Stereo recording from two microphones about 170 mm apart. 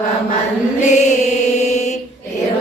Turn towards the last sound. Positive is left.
turn(degrees=45)  # may be behind; listen again after turning